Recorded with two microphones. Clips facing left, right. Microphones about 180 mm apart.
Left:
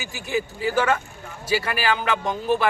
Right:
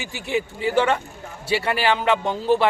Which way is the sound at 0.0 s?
30° right (ahead or behind).